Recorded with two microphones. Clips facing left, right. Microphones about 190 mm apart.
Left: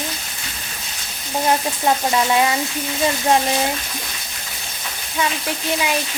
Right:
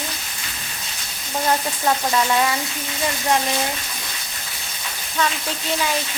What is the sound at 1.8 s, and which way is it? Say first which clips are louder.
Frying: left 2 dB; 20° left (ahead or behind).